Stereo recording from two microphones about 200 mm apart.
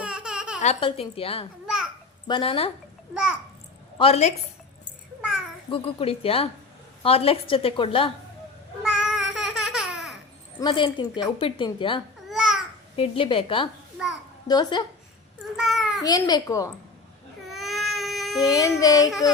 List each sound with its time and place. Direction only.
0.0 s a sound: 5° right (ahead or behind)
0.6 s a woman's voice: 30° left (ahead or behind)
1.6 s babbling: 5° right (ahead or behind)
2.2 s a woman's voice: 25° left (ahead or behind)
3.9 s a woman's voice: 30° left (ahead or behind)
5.6 s a woman's voice: 25° left (ahead or behind)
8.8 s babbling: centre (ahead or behind)
10.6 s a woman's voice: 25° left (ahead or behind)
12.3 s babbling: 5° right (ahead or behind)
13.0 s a woman's voice: 25° left (ahead or behind)
15.5 s a sound: centre (ahead or behind)
16.0 s a woman's voice: 20° left (ahead or behind)
17.5 s baby cry: centre (ahead or behind)
18.5 s child singing: 15° left (ahead or behind)